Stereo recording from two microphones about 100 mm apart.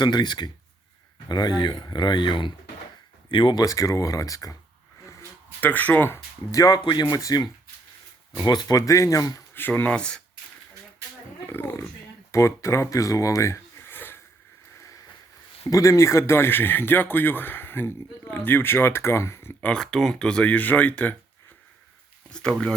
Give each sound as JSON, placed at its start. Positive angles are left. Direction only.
{"t": 0.0, "sound": "speech", "side_deg": 45}
{"t": 3.6, "sound": "speech", "side_deg": 35}
{"t": 5.5, "sound": "speech", "side_deg": 15}
{"t": 6.5, "sound": "speech", "side_deg": 35}
{"t": 6.8, "sound": "speech", "side_deg": 50}
{"t": 7.2, "sound": "speech", "side_deg": 35}
{"t": 9.6, "sound": "speech", "side_deg": 20}
{"t": 11.4, "sound": "speech", "side_deg": 20}
{"t": 15.6, "sound": "speech", "side_deg": 30}
{"t": 19.6, "sound": "speech", "side_deg": 5}
{"t": 22.3, "sound": "speech", "side_deg": 10}